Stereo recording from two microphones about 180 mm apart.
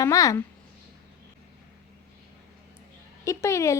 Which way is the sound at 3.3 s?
15° left (ahead or behind).